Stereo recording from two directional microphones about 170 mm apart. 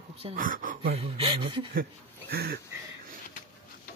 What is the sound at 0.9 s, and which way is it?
Speech, 30° right (ahead or behind).